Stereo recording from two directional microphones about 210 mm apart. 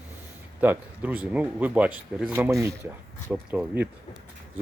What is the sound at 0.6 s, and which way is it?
Speech, 10° right (ahead or behind).